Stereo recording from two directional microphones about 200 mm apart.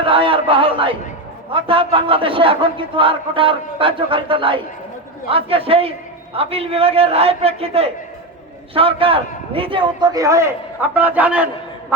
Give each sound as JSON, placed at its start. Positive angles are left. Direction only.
{"t": 0.0, "sound": "a man's voice", "side_deg": -25}